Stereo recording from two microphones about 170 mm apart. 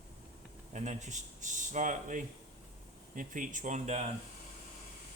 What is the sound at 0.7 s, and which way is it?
Speech, 45° right (ahead or behind).